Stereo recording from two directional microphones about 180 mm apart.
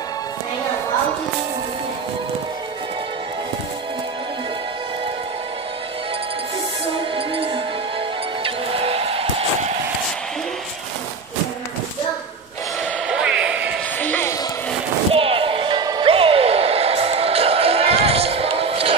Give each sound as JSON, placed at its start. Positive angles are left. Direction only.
{"t": 7.2, "sound": "music", "side_deg": -30}
{"t": 13.1, "sound": "a sound", "side_deg": -5}
{"t": 13.9, "sound": "basketball bounce", "side_deg": 10}
{"t": 15.1, "sound": "music", "side_deg": -30}